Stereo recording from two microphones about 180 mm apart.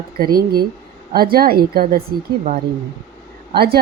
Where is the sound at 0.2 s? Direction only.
55° right (ahead or behind).